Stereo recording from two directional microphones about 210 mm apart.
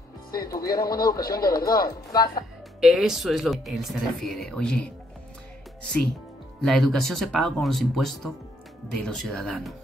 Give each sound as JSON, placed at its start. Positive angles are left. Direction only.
{"t": 0.5, "sound": "speech", "side_deg": 15}
{"t": 2.8, "sound": "speech", "side_deg": 0}
{"t": 6.6, "sound": "speech", "side_deg": 0}